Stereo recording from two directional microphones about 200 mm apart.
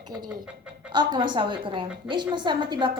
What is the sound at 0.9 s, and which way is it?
Child singing, 25° right (ahead or behind).